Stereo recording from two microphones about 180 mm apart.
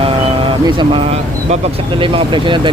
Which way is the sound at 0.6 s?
25° right (ahead or behind).